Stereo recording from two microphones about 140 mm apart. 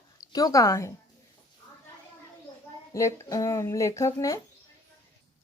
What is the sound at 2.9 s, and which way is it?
Speech, 25° left (ahead or behind).